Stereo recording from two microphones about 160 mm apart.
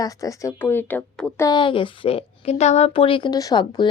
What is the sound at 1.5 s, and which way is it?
Speech, 30° left (ahead or behind).